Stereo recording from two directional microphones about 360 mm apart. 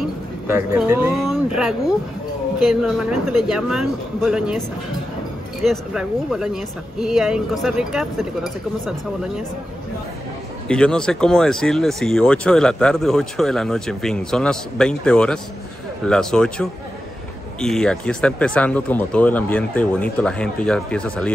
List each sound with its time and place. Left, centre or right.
0.0 s speech: centre
10.7 s speech: centre